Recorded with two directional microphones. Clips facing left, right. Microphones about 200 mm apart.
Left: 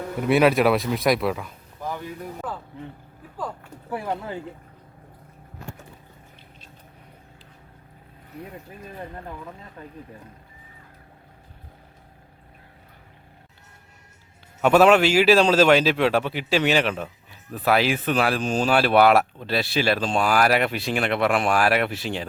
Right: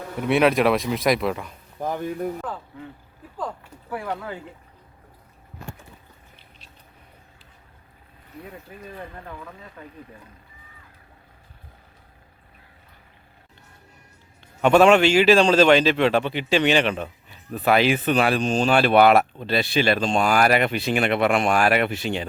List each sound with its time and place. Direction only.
0.2 s a man's voice: centre (ahead or behind)
3.9 s speech: 25° left (ahead or behind)
14.6 s a man's voice: 5° left (ahead or behind)